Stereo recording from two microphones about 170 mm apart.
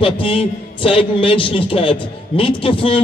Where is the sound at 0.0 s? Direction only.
30° left (ahead or behind).